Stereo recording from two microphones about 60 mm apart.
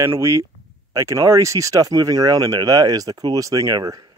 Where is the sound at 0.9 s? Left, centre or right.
Right.